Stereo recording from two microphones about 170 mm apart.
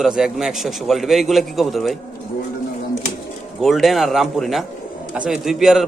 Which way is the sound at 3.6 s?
Centre (ahead or behind).